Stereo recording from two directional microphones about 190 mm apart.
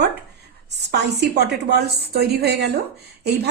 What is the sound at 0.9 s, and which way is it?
A woman's voice, 60° right (ahead or behind).